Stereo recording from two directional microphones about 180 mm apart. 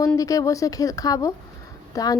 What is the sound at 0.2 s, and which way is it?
A woman's voice, 20° left (ahead or behind).